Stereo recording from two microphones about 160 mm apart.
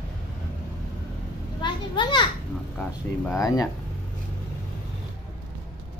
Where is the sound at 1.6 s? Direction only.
30° left (ahead or behind).